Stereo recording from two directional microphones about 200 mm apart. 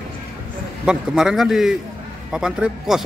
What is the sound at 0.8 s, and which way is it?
A man's voice, 5° right (ahead or behind).